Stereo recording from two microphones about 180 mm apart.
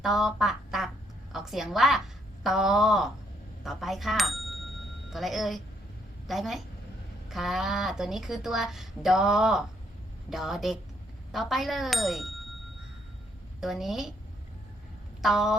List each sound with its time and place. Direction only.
0.0 s a woman's voice: centre (ahead or behind)
13.6 s speech: centre (ahead or behind)
15.2 s speech: centre (ahead or behind)